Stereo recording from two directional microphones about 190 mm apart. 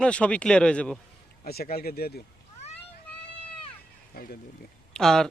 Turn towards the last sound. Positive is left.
turn(degrees=0)  # may be behind; listen again after turning